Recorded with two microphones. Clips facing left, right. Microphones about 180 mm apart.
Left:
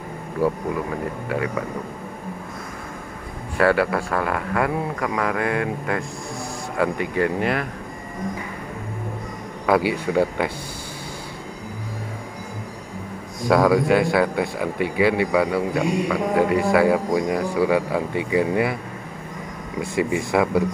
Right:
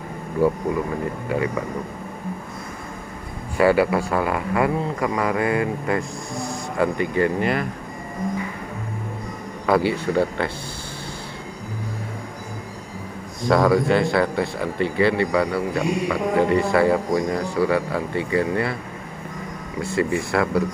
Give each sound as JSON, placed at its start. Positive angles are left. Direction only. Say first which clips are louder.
{"t": 0.4, "sound": "speech", "louder": "right 2 dB", "side_deg": 5}
{"t": 3.5, "sound": "speech", "louder": "right 2 dB", "side_deg": -5}
{"t": 9.7, "sound": "speech", "louder": "even", "side_deg": 10}
{"t": 13.5, "sound": "speech", "louder": "left 1 dB", "side_deg": 5}
{"t": 19.8, "sound": "speech", "louder": "even", "side_deg": 15}